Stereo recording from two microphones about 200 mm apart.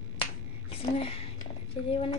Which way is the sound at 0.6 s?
30° left (ahead or behind).